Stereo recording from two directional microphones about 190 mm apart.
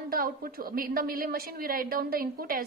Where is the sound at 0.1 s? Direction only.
50° right (ahead or behind).